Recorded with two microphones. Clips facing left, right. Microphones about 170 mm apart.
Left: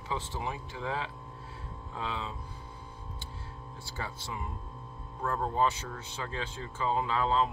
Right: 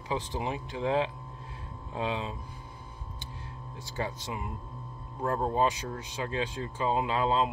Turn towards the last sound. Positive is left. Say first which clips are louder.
# right 2 dB
turn(degrees=-15)  # may be behind; listen again after turning